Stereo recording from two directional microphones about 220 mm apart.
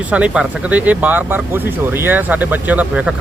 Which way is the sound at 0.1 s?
5° right (ahead or behind).